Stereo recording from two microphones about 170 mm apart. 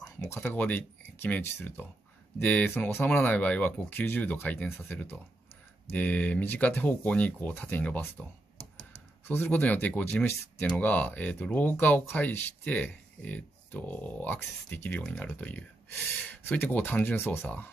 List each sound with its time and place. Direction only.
0.0 s speech: 10° left (ahead or behind)
9.2 s speech: 10° left (ahead or behind)